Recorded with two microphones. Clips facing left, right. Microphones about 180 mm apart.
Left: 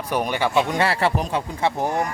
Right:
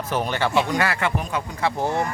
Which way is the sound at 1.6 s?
15° left (ahead or behind).